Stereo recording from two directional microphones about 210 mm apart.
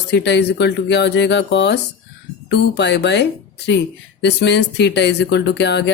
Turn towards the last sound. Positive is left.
turn(degrees=55)  # may be behind; listen again after turning